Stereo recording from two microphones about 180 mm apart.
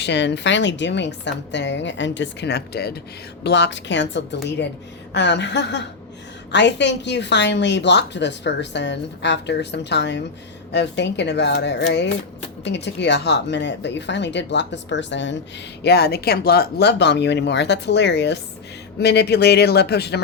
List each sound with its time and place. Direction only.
0.0 s a woman's voice: 75° left (ahead or behind)
3.4 s a woman's voice: 75° left (ahead or behind)
15.8 s a woman's voice: 60° left (ahead or behind)